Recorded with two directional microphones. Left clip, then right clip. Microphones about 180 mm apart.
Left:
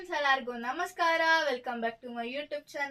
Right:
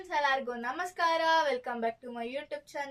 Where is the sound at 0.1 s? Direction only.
20° right (ahead or behind).